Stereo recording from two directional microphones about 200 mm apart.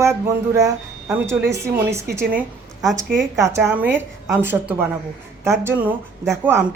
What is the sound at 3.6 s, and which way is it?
Speech, 10° right (ahead or behind).